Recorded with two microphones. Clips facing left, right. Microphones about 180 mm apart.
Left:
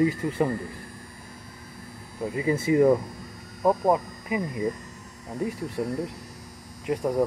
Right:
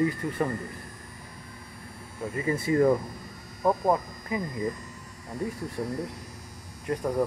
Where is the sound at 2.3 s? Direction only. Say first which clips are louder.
Left 3 dB; 15° left (ahead or behind).